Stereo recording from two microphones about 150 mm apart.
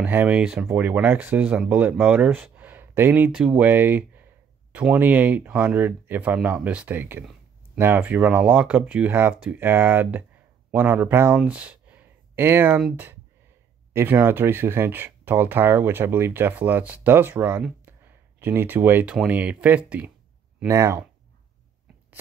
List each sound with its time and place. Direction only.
0.0 s speech: 10° right (ahead or behind)